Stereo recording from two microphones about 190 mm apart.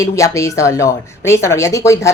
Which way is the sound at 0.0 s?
15° left (ahead or behind).